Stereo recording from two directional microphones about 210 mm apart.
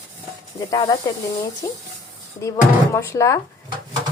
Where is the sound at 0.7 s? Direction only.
20° left (ahead or behind).